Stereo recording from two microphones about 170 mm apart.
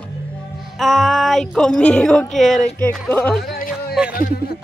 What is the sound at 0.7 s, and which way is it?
Speech, centre (ahead or behind).